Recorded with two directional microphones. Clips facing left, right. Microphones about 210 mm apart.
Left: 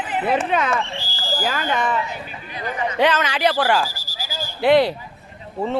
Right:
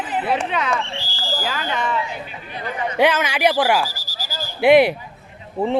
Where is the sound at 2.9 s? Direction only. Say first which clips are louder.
Right 2 dB; 10° right (ahead or behind).